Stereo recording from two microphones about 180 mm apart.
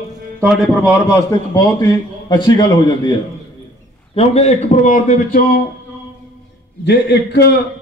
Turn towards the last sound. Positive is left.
turn(degrees=70)  # may be behind; listen again after turning